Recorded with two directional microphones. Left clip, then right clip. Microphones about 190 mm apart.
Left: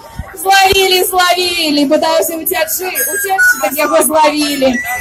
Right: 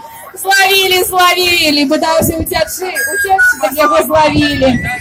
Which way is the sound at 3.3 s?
30° right (ahead or behind).